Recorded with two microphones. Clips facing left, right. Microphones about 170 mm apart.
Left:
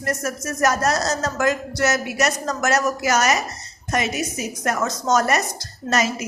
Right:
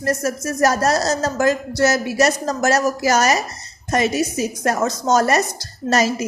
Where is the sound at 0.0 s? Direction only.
30° right (ahead or behind).